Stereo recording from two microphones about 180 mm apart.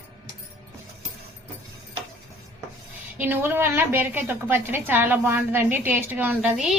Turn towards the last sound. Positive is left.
turn(degrees=-5)  # may be behind; listen again after turning